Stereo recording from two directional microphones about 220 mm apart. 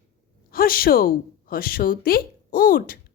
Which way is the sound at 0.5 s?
40° left (ahead or behind).